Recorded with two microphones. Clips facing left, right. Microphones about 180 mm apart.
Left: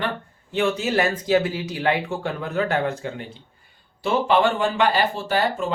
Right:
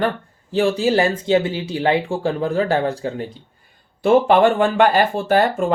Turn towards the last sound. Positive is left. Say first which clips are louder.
# right 6 dB
turn(degrees=-50)  # may be behind; listen again after turning